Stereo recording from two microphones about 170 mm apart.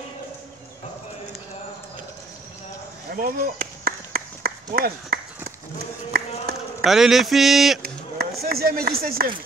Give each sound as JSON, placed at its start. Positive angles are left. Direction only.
{"t": 3.1, "sound": "a sound", "side_deg": -55}
{"t": 6.8, "sound": "speech", "side_deg": 0}
{"t": 7.8, "sound": "speech", "side_deg": -65}